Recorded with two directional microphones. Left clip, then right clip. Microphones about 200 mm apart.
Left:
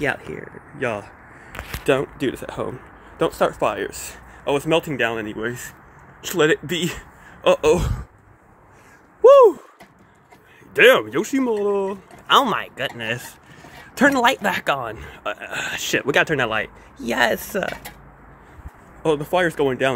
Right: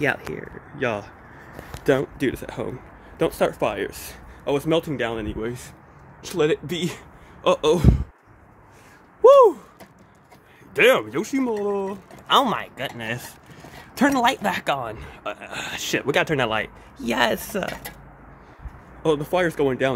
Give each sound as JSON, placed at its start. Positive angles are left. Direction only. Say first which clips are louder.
{"t": 0.0, "sound": "speech", "louder": "even", "side_deg": 5}
{"t": 7.4, "sound": "speech", "louder": "left 3 dB", "side_deg": 5}
{"t": 9.2, "sound": "a sound", "louder": "left 2 dB", "side_deg": 0}
{"t": 10.7, "sound": "speech", "louder": "left 4 dB", "side_deg": 10}
{"t": 16.3, "sound": "speech", "louder": "left 1 dB", "side_deg": -5}
{"t": 19.2, "sound": "speech", "louder": "left 2 dB", "side_deg": 10}